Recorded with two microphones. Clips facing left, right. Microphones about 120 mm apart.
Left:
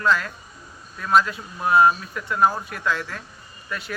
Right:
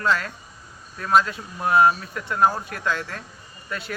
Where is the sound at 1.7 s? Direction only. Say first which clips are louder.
Left 1 dB; 35° right (ahead or behind).